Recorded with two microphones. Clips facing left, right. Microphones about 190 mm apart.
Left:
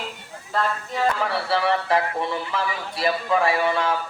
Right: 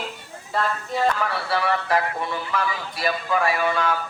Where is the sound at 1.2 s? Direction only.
25° left (ahead or behind).